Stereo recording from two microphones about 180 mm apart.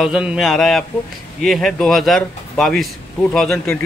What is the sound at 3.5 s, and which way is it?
Speech, 15° left (ahead or behind).